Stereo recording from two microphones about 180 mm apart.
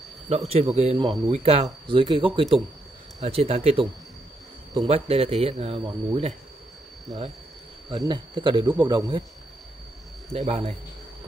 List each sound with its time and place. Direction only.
0.3 s speech: 35° right (ahead or behind)
1.0 s speech: 20° right (ahead or behind)
1.3 s speech: 35° right (ahead or behind)
7.9 s speech: 25° right (ahead or behind)
10.3 s speech: 30° right (ahead or behind)